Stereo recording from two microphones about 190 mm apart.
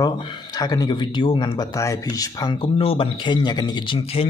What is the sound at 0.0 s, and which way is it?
Speech, 20° left (ahead or behind).